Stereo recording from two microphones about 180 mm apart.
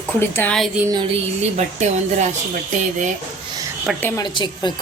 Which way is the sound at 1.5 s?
40° right (ahead or behind).